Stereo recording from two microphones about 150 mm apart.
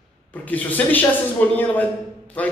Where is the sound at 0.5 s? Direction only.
10° left (ahead or behind).